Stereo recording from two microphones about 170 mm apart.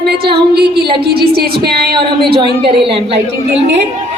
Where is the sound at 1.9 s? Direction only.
30° right (ahead or behind).